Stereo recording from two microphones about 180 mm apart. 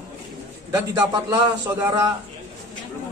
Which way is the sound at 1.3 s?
15° right (ahead or behind).